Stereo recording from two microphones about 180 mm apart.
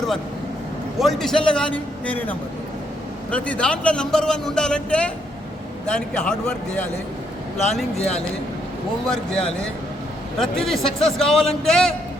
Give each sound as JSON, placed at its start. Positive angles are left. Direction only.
{"t": 0.9, "sound": "a man's voice", "side_deg": 0}
{"t": 3.3, "sound": "a man's voice", "side_deg": 5}
{"t": 7.9, "sound": "a man's voice", "side_deg": 35}
{"t": 9.0, "sound": "a man's voice", "side_deg": 5}